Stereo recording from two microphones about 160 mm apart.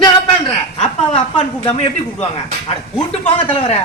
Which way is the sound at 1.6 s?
40° left (ahead or behind).